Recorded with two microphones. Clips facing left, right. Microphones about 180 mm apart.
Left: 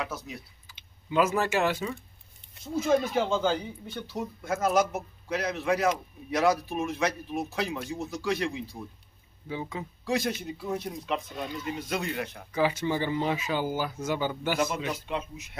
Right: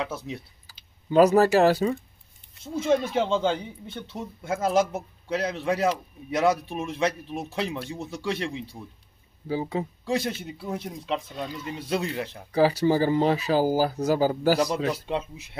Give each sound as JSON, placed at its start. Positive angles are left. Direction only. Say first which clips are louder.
{"t": 0.0, "sound": "a man's voice", "louder": "right 4 dB", "side_deg": -25}